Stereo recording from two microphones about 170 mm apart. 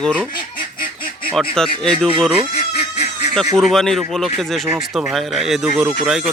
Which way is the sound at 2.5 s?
40° left (ahead or behind).